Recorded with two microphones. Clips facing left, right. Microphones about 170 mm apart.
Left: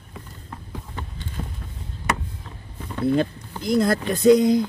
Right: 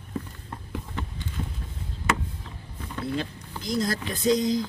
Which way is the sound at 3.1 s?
60° left (ahead or behind).